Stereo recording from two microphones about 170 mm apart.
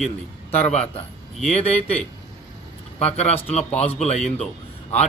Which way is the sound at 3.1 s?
40° left (ahead or behind).